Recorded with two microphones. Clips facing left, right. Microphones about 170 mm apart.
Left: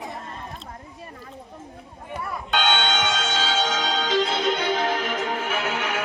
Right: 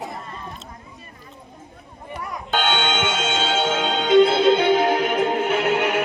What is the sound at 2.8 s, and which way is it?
Music, 50° right (ahead or behind).